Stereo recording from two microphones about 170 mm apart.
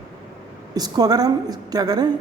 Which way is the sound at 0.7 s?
25° right (ahead or behind).